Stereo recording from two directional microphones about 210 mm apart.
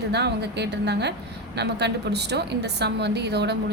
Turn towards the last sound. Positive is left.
turn(degrees=-55)  # may be behind; listen again after turning